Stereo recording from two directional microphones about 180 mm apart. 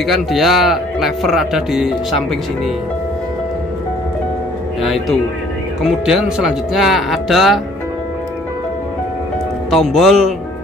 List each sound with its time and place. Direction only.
0.0 s speech: centre (ahead or behind)
4.8 s speech: centre (ahead or behind)
9.7 s speech: centre (ahead or behind)